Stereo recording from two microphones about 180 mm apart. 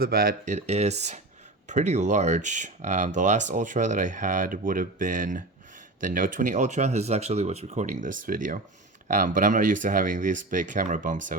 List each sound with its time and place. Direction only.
0.0 s speech: 55° right (ahead or behind)